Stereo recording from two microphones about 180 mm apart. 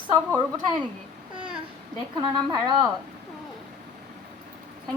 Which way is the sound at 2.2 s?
20° right (ahead or behind).